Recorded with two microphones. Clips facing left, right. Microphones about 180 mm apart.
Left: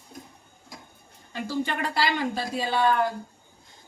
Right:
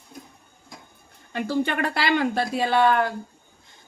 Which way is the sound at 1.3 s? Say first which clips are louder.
Right 4 dB; 60° right (ahead or behind).